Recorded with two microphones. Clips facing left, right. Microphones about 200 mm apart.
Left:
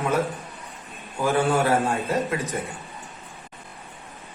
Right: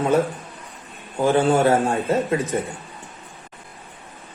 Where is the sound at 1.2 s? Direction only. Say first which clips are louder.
Right 4 dB; 25° right (ahead or behind).